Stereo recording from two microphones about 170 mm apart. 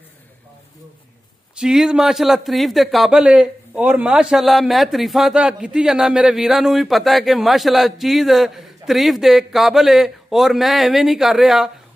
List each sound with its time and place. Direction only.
1.5 s a man's voice: 5° right (ahead or behind)